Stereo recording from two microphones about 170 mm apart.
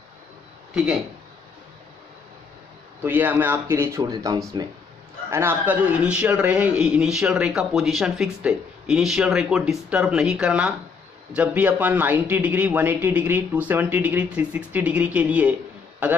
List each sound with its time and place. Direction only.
3.0 s a man's voice: 10° right (ahead or behind)